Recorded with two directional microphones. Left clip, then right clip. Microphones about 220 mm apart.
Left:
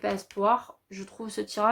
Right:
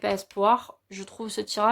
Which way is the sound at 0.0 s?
40° right (ahead or behind).